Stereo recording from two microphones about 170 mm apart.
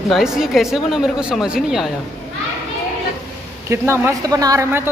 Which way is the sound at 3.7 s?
15° right (ahead or behind).